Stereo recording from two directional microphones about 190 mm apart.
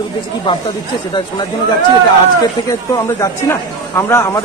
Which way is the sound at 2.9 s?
15° left (ahead or behind).